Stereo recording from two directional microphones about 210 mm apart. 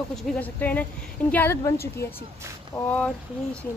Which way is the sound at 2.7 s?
5° left (ahead or behind).